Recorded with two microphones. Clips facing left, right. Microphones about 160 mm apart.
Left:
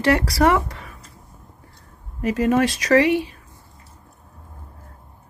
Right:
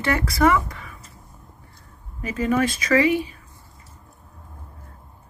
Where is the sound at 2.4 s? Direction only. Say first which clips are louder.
Left 2 dB; 80° left.